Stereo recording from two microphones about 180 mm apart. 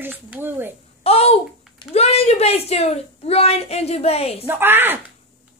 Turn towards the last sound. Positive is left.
turn(degrees=-10)  # may be behind; listen again after turning